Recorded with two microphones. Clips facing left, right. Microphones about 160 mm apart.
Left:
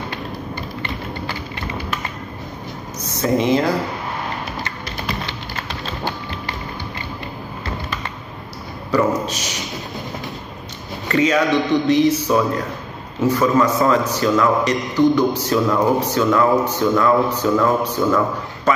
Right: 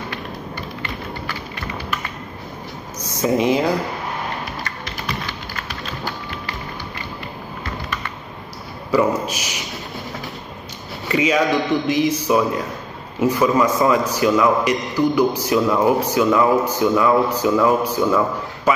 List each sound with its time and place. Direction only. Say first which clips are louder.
3.0 s speech: even; 10° right (ahead or behind)
8.9 s a man's voice: even; 10° right (ahead or behind)
11.1 s a man's voice: left 1 dB; 10° right (ahead or behind)